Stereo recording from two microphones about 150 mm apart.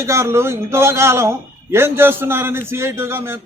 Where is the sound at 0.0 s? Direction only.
20° right (ahead or behind).